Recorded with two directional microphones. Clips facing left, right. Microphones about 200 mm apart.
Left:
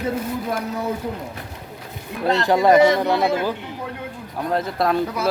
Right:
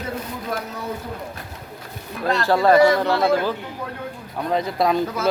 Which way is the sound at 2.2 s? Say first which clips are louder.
Left 1 dB; 20° left (ahead or behind).